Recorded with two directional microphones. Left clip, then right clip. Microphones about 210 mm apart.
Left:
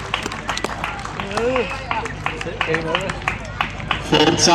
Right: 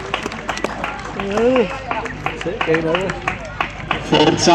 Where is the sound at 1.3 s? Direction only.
45° right (ahead or behind).